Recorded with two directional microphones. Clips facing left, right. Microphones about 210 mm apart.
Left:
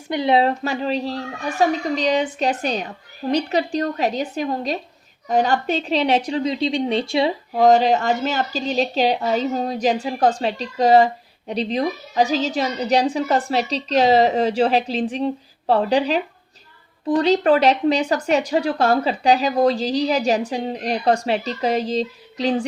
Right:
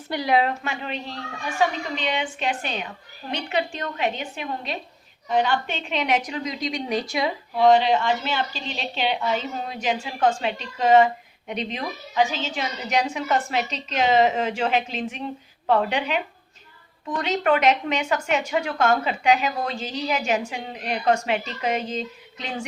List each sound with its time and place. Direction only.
0.1 s speech: 25° left (ahead or behind)
7.5 s speech: 40° left (ahead or behind)